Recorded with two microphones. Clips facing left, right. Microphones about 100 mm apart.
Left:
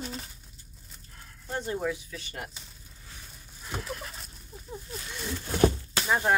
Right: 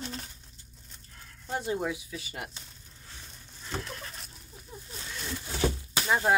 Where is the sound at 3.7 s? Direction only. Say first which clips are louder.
Left 1 dB; 5° left (ahead or behind).